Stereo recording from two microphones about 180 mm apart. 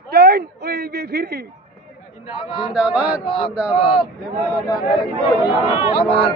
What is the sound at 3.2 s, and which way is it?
Speech, 30° left (ahead or behind).